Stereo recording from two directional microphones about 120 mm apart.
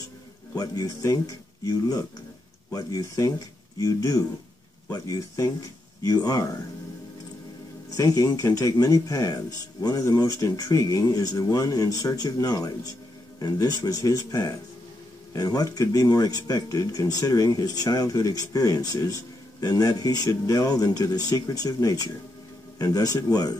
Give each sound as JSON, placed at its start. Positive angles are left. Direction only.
{"t": 0.6, "sound": "speech", "side_deg": 30}
{"t": 7.9, "sound": "speech", "side_deg": 30}